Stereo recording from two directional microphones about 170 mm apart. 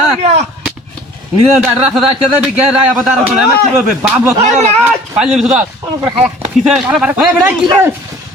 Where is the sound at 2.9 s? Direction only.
Centre (ahead or behind).